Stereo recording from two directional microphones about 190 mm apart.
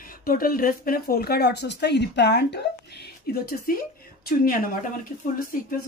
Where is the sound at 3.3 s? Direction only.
50° left (ahead or behind).